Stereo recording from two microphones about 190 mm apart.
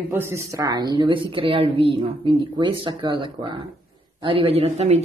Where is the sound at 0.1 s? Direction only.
15° right (ahead or behind).